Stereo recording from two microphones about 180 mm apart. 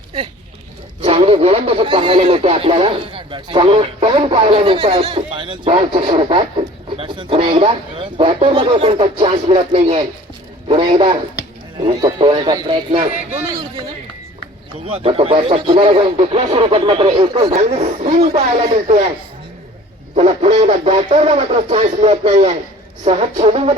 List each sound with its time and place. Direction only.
1.0 s speech: 35° right (ahead or behind)
14.8 s speech: 35° right (ahead or behind)
20.1 s speech: 40° right (ahead or behind)